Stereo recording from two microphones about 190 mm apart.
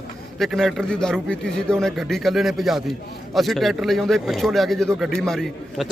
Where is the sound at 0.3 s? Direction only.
Centre (ahead or behind).